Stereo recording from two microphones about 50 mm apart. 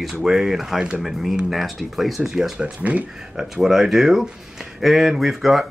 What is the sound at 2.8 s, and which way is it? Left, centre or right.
Speech, right.